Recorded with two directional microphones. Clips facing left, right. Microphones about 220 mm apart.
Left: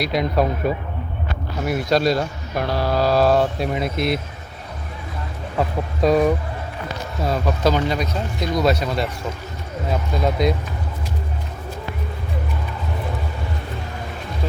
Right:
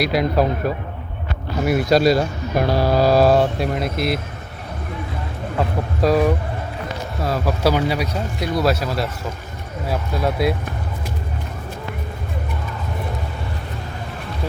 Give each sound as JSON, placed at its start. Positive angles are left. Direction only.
{"t": 0.0, "sound": "speech", "side_deg": -5}
{"t": 5.5, "sound": "speech", "side_deg": 0}